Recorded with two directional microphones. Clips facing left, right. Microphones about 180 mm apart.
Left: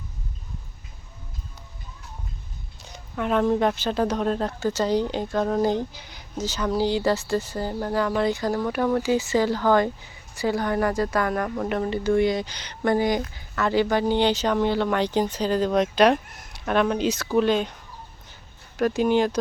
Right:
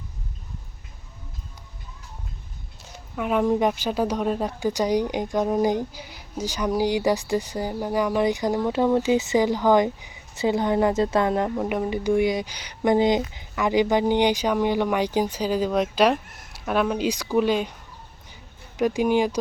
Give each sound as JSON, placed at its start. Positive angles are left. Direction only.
{"t": 2.8, "sound": "speech", "side_deg": -5}
{"t": 18.8, "sound": "speech", "side_deg": -15}